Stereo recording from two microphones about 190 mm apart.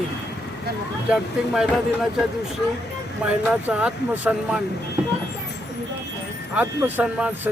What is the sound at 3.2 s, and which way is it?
Speech, 10° right (ahead or behind).